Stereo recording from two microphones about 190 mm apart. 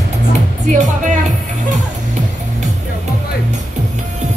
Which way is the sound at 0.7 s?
40° right (ahead or behind).